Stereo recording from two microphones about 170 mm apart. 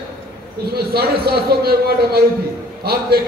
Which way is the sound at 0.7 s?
70° right (ahead or behind).